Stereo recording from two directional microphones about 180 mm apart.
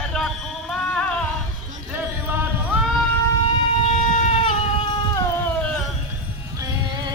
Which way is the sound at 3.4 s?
40° left (ahead or behind).